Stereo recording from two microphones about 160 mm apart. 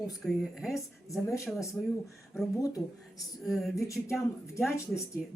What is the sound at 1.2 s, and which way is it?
Speech, 20° left (ahead or behind).